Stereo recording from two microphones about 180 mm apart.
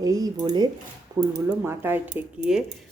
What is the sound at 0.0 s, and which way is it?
Speech, 20° right (ahead or behind).